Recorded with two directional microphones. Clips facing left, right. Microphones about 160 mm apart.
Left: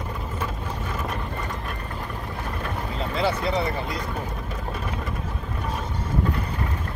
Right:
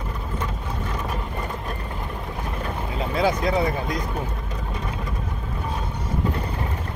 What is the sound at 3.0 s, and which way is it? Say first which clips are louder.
Speech: right 3 dB; 10° right (ahead or behind).